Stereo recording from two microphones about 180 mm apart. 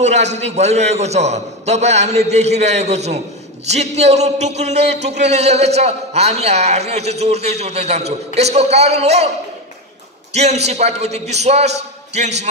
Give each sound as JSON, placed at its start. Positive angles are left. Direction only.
{"t": 0.0, "sound": "a man's voice", "side_deg": -40}
{"t": 10.3, "sound": "a man's voice", "side_deg": -40}